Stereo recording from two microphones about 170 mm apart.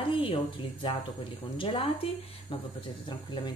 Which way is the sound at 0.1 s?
30° left (ahead or behind).